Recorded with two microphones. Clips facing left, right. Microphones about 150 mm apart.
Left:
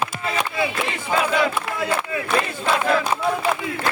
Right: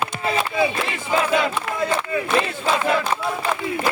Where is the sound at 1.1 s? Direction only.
20° right (ahead or behind).